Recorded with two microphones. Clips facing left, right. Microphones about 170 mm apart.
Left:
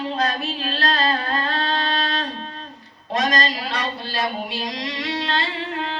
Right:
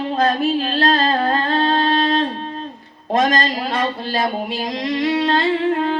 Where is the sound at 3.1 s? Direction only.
50° right (ahead or behind).